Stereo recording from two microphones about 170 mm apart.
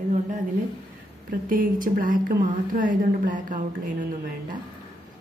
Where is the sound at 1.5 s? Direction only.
55° right (ahead or behind).